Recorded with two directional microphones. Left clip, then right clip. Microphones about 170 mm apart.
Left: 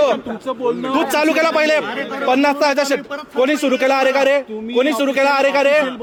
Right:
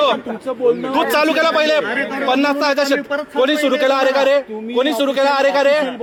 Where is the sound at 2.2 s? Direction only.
55° left (ahead or behind).